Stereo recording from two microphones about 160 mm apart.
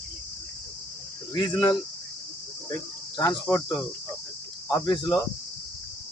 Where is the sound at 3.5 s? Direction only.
20° left (ahead or behind).